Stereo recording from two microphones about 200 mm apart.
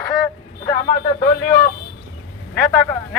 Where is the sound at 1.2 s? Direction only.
45° left (ahead or behind).